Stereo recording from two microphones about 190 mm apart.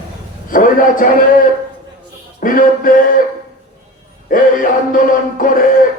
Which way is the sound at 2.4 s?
45° left (ahead or behind).